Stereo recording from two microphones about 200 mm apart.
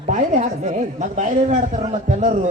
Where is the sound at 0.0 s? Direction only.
40° right (ahead or behind).